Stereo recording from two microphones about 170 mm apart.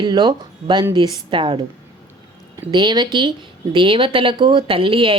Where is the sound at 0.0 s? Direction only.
25° right (ahead or behind).